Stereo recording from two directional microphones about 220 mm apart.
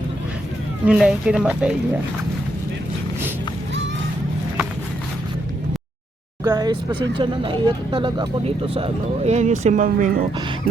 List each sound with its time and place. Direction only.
0.9 s speech: 5° right (ahead or behind)
6.4 s speech: 20° right (ahead or behind); by 10.2 s 35° right (ahead or behind)